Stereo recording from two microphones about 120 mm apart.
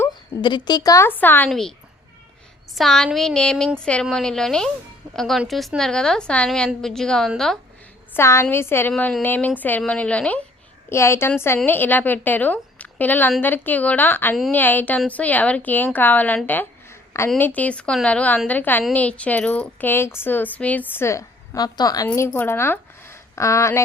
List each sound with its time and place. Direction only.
0.1 s a woman's voice: 40° left (ahead or behind)
1.0 s speech: 15° left (ahead or behind)
1.5 s a woman's voice: 5° left (ahead or behind)
2.7 s a woman's voice: 5° left (ahead or behind)
8.1 s a woman's voice: 20° left (ahead or behind)
10.8 s a woman's voice: 20° left (ahead or behind)
16.5 s a sound: 20° left (ahead or behind)
17.2 s speech: 15° left (ahead or behind)